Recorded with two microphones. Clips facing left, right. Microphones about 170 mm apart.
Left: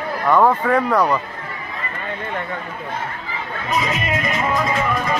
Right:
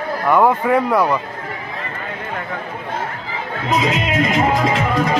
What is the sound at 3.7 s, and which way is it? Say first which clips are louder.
Music: right 3 dB; 90° right.